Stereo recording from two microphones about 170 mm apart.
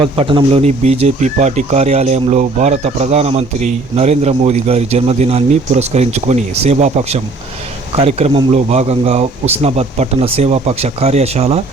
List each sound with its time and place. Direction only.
0.0 s speech: 30° right (ahead or behind)